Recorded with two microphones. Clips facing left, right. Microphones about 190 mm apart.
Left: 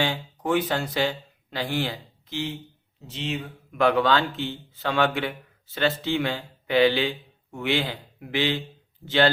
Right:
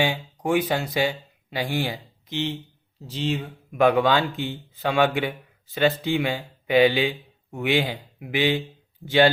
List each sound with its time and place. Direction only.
0.0 s speech: 10° right (ahead or behind)
3.1 s speech: 35° right (ahead or behind)
3.8 s a man's voice: 15° right (ahead or behind)